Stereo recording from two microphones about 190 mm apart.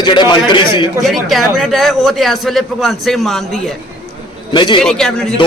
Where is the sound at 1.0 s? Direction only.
Centre (ahead or behind).